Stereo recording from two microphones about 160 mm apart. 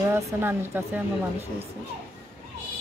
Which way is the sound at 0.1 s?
15° right (ahead or behind).